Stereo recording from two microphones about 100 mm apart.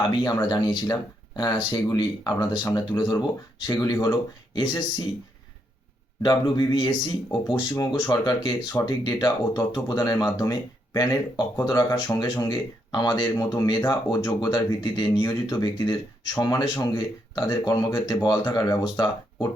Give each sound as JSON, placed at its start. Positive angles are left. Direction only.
{"t": 0.0, "sound": "speech", "side_deg": 50}
{"t": 6.2, "sound": "speech", "side_deg": 50}